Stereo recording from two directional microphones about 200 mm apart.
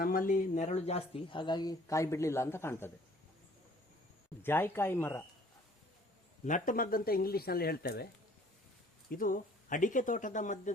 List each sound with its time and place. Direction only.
0.0 s speech: 45° left (ahead or behind); by 2.9 s 10° left (ahead or behind)
4.4 s speech: 10° left (ahead or behind)
6.4 s speech: 40° left (ahead or behind)
9.0 s speech: 45° left (ahead or behind)